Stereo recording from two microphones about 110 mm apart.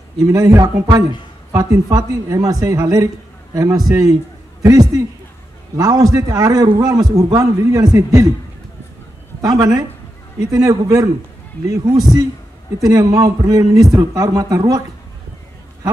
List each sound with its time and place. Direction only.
0.3 s a man's voice: 30° right (ahead or behind)
9.4 s a man's voice: 35° right (ahead or behind)